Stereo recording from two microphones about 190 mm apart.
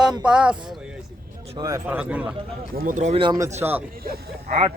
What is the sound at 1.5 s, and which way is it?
Speech, 20° right (ahead or behind).